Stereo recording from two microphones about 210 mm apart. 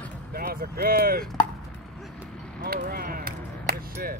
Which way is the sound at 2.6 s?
45° right (ahead or behind).